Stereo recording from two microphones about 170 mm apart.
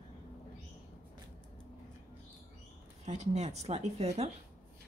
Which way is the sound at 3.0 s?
40° right (ahead or behind).